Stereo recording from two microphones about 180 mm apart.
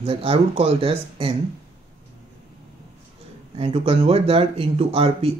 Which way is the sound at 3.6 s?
35° right (ahead or behind).